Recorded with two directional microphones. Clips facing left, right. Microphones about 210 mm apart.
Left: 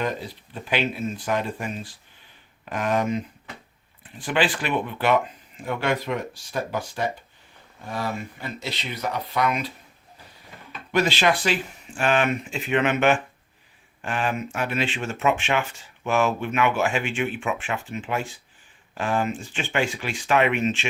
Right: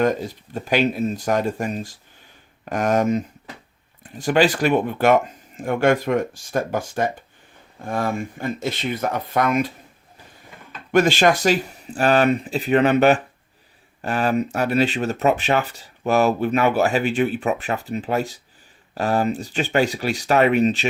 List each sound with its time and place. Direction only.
0.0 s speech: 45° right (ahead or behind)
10.9 s speech: 50° right (ahead or behind)